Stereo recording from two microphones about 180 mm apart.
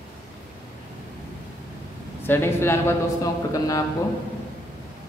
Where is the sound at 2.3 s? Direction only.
15° left (ahead or behind).